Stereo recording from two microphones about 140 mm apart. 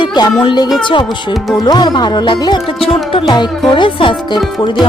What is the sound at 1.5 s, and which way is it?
Music, 30° left (ahead or behind).